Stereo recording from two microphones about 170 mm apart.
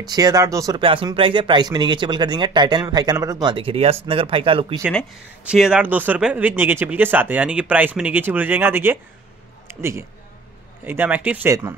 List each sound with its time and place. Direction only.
0.0 s speech: 20° right (ahead or behind)
0.7 s speech: 30° right (ahead or behind)
5.4 s speech: 5° right (ahead or behind)